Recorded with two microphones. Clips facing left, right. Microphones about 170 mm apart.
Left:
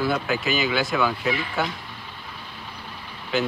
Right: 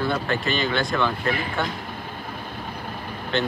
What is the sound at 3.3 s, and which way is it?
Speech, 5° left (ahead or behind).